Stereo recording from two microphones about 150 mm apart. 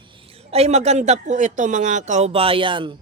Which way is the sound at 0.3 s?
40° right (ahead or behind).